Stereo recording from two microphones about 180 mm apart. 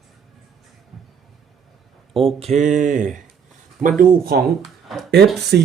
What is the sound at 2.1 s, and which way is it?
Speech, 30° right (ahead or behind).